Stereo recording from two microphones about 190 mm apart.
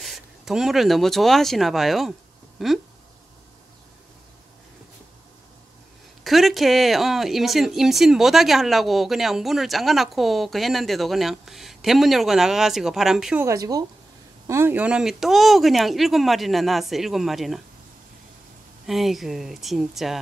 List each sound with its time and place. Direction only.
0.0 s speech: centre (ahead or behind)
6.2 s speech: centre (ahead or behind)
13.5 s speech: 20° right (ahead or behind); by 17.6 s centre (ahead or behind)
18.9 s speech: centre (ahead or behind)